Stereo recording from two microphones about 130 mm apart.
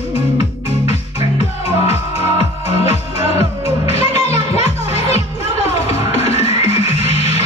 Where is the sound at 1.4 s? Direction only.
55° left (ahead or behind).